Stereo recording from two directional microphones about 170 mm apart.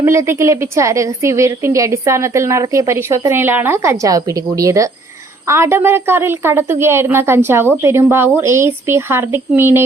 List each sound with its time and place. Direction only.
0.0 s a woman's voice: 15° right (ahead or behind)